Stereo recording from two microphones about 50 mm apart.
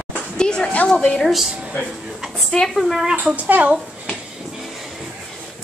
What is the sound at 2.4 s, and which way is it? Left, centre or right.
Speech, centre.